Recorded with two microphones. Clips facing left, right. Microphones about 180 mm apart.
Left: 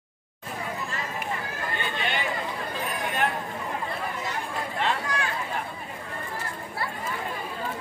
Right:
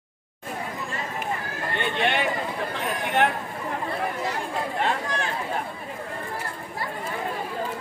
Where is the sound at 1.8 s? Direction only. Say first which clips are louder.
Right 7 dB; 70° right (ahead or behind).